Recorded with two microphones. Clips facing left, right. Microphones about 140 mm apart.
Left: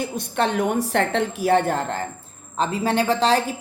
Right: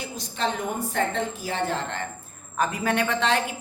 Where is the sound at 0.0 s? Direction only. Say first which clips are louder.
Left 6 dB; 65° left (ahead or behind); by 2.0 s 45° left (ahead or behind).